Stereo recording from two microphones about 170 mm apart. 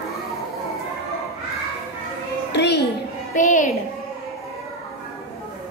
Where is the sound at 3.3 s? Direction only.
50° left (ahead or behind).